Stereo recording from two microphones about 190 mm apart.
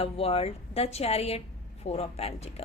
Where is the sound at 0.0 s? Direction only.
30° left (ahead or behind).